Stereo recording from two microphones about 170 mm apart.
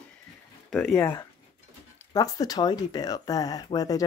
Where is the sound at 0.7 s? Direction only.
5° left (ahead or behind).